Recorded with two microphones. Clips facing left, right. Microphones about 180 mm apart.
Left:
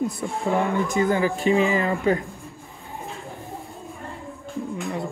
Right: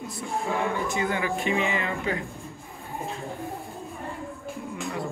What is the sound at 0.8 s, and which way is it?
Speech, 40° left (ahead or behind).